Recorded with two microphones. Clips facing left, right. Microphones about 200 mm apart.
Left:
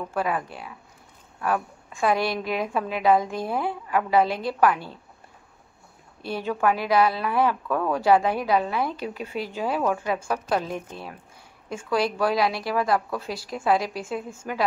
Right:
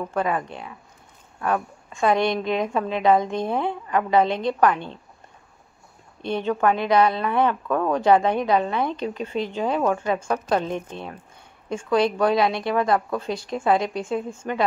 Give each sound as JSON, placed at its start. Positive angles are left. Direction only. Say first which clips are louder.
{"t": 0.1, "sound": "a woman's voice", "louder": "right 1 dB", "side_deg": 5}
{"t": 6.2, "sound": "a woman's voice", "louder": "right 3 dB", "side_deg": 5}